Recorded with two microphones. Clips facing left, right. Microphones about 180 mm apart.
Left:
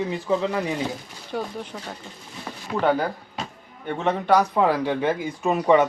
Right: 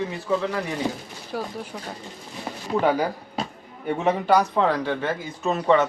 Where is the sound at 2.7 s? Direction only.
30° right (ahead or behind).